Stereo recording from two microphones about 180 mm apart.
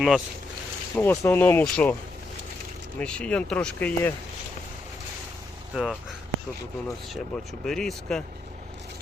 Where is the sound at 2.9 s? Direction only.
5° left (ahead or behind).